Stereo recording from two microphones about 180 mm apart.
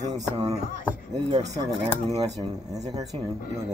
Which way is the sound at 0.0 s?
40° right (ahead or behind).